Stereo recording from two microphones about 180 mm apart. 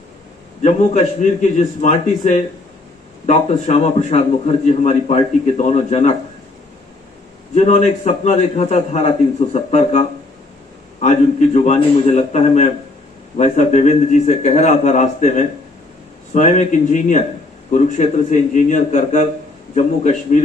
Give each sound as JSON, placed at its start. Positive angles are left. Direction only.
{"t": 0.6, "sound": "a man's voice", "side_deg": 40}
{"t": 7.5, "sound": "a man's voice", "side_deg": 40}